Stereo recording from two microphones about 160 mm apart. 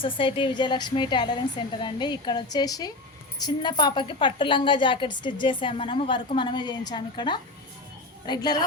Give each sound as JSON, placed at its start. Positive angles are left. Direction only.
{"t": 0.2, "sound": "a woman's voice", "side_deg": 30}